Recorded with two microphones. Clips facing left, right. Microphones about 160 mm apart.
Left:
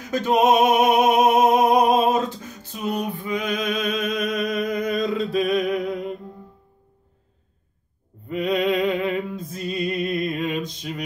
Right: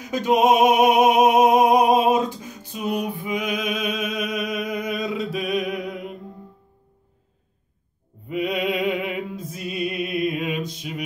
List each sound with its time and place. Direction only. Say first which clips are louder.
0.0 s music: even; 10° right (ahead or behind)
8.3 s music: left 2 dB; 10° right (ahead or behind)